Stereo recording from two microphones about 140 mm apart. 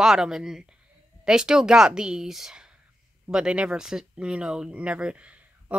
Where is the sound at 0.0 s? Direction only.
5° right (ahead or behind).